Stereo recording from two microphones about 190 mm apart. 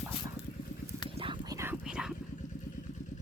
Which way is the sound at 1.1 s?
25° right (ahead or behind).